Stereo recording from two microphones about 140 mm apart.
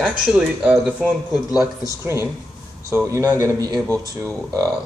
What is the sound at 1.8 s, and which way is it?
Speech, 20° right (ahead or behind).